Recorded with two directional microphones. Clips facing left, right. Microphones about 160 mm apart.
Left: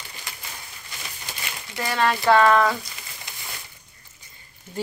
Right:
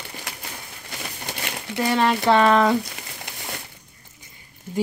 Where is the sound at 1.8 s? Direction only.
20° right (ahead or behind).